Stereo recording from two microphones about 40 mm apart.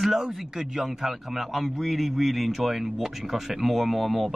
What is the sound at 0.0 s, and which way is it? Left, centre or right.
A man's voice, centre.